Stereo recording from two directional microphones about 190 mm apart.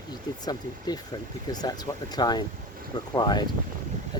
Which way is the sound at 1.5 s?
20° left (ahead or behind).